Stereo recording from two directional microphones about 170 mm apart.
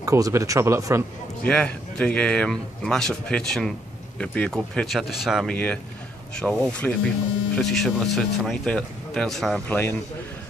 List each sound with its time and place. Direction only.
0.0 s a man's voice: 20° right (ahead or behind)
1.4 s a man's voice: 10° left (ahead or behind)